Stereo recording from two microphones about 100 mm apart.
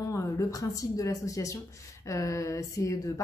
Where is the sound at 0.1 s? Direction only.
30° left (ahead or behind).